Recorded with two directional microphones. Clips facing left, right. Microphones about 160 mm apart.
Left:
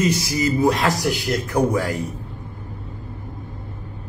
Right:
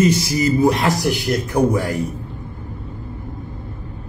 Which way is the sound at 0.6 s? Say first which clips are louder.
Right 2 dB; 25° right (ahead or behind).